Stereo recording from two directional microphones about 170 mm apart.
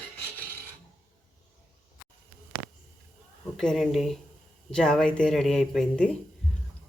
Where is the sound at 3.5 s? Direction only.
Centre (ahead or behind).